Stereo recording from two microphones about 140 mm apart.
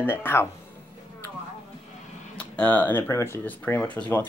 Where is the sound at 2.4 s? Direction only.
10° left (ahead or behind).